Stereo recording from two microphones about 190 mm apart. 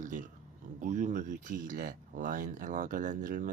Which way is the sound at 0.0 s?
40° right (ahead or behind).